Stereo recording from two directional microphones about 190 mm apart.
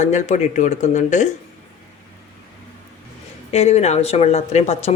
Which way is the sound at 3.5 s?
35° left (ahead or behind).